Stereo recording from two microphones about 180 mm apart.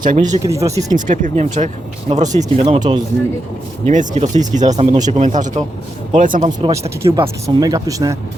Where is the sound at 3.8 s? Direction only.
40° right (ahead or behind).